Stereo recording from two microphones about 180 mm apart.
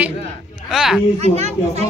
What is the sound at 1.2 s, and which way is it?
Speech, 35° right (ahead or behind).